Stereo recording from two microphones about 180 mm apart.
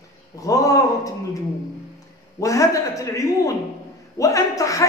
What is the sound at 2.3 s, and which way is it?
A man's voice, 15° left (ahead or behind).